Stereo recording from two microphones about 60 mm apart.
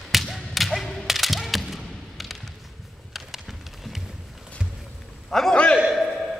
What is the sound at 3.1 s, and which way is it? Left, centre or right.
Horse, centre.